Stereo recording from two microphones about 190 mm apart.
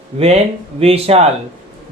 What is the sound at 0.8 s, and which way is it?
Speech, 30° right (ahead or behind).